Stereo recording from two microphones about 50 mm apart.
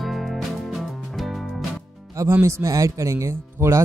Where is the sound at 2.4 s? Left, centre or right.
Right.